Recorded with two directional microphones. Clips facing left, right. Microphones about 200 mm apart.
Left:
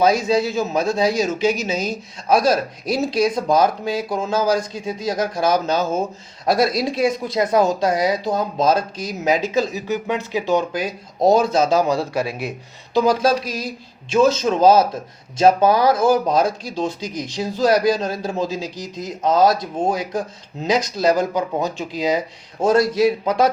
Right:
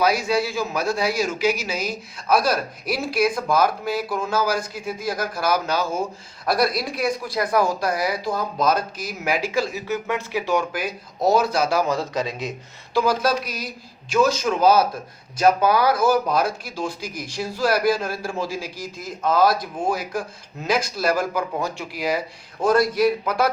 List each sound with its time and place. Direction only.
0.0 s speech: 25° left (ahead or behind)
13.1 s speech: 25° left (ahead or behind)